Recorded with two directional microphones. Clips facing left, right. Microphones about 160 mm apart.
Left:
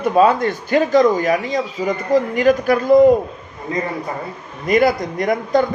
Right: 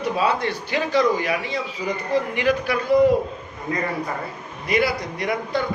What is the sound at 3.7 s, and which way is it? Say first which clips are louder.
Speech: left 3 dB; 25° left (ahead or behind).